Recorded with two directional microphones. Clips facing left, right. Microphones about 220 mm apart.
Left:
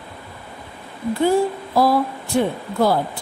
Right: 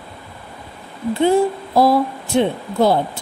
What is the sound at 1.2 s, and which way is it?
Speech, 25° right (ahead or behind).